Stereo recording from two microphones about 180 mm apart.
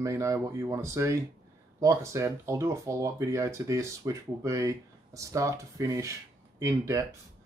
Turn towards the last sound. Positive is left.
turn(degrees=-15)  # may be behind; listen again after turning